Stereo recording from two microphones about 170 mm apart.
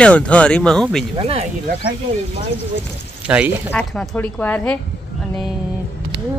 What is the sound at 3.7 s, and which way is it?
Speech, 10° left (ahead or behind).